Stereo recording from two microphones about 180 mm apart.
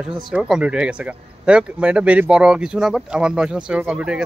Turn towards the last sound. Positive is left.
turn(degrees=-5)  # may be behind; listen again after turning